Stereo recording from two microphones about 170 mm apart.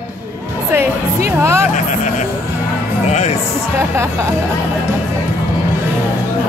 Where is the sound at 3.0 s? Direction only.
40° left (ahead or behind).